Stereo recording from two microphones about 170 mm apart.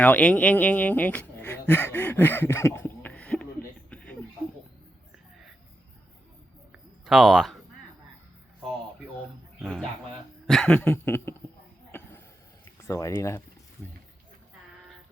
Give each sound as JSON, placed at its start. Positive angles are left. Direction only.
{"t": 0.0, "sound": "speech", "side_deg": 10}
{"t": 1.6, "sound": "a sound", "side_deg": 10}
{"t": 7.0, "sound": "speech", "side_deg": 0}
{"t": 9.6, "sound": "speech", "side_deg": 0}
{"t": 11.9, "sound": "a sound", "side_deg": 15}
{"t": 12.9, "sound": "speech", "side_deg": 15}